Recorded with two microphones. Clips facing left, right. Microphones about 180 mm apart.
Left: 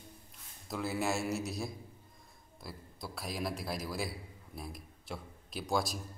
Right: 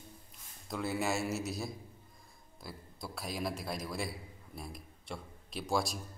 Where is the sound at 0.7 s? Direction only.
Centre (ahead or behind).